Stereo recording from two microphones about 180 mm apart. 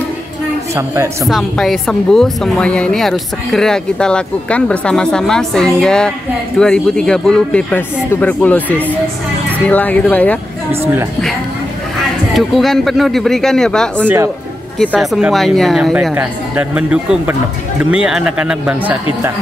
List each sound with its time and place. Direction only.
0.7 s speech: 15° right (ahead or behind)
1.2 s speech: centre (ahead or behind)
12.4 s speech: centre (ahead or behind)
14.0 s speech: 10° right (ahead or behind)
14.8 s speech: centre (ahead or behind)